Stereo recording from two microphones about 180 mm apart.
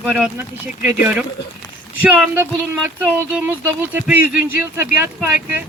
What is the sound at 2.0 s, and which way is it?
Speech, 10° right (ahead or behind).